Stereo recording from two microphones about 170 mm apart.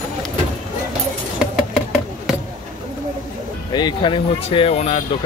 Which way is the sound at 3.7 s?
25° left (ahead or behind).